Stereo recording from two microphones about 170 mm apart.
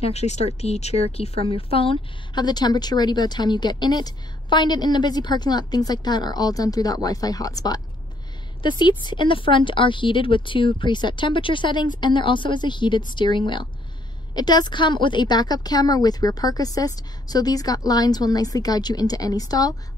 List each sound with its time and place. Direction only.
0.0 s speech: 40° left (ahead or behind); by 19.7 s 20° left (ahead or behind)